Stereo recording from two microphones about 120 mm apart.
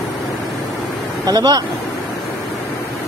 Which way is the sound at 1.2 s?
35° right (ahead or behind).